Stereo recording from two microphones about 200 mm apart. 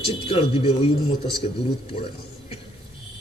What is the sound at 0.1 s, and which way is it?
Speech, 25° left (ahead or behind).